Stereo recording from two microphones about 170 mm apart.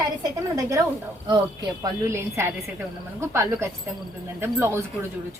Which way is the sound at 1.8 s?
15° right (ahead or behind).